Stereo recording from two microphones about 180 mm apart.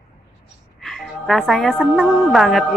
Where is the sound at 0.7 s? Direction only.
Centre (ahead or behind).